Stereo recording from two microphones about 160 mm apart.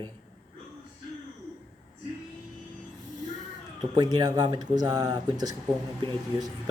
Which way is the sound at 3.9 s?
25° right (ahead or behind).